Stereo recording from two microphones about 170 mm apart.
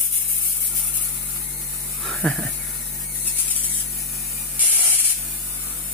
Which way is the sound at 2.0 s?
Centre (ahead or behind).